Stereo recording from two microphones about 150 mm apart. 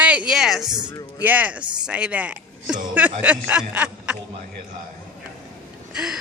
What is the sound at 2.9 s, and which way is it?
Speech, 10° right (ahead or behind).